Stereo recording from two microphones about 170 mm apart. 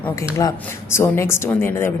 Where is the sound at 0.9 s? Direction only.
15° left (ahead or behind).